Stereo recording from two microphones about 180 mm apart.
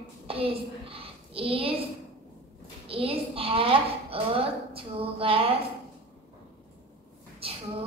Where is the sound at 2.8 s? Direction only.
30° right (ahead or behind).